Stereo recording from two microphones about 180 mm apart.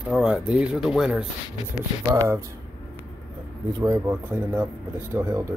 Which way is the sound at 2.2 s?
15° right (ahead or behind).